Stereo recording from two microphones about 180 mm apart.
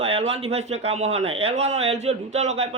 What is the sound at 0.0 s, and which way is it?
A man's voice, 35° right (ahead or behind).